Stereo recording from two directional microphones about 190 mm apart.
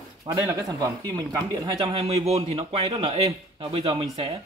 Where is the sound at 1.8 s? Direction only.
30° right (ahead or behind).